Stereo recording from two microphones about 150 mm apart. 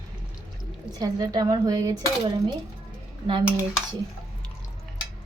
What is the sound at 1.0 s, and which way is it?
Speech, 25° right (ahead or behind).